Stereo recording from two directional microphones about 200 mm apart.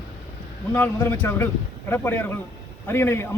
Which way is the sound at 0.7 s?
10° left (ahead or behind).